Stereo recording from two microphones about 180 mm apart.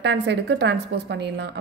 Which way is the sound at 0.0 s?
70° right (ahead or behind).